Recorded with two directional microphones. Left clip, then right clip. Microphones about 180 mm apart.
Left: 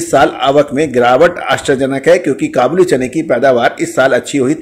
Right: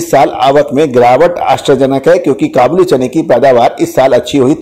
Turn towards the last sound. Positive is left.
turn(degrees=-15)  # may be behind; listen again after turning